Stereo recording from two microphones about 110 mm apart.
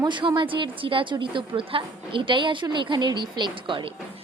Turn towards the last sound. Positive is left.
turn(degrees=-45)  # may be behind; listen again after turning